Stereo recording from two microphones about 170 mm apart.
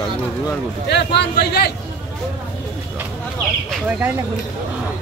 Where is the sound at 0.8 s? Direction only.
80° left.